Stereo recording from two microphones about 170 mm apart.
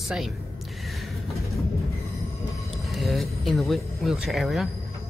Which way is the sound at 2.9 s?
Centre (ahead or behind).